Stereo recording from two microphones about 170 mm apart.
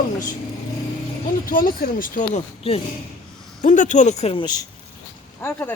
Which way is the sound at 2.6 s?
35° left (ahead or behind).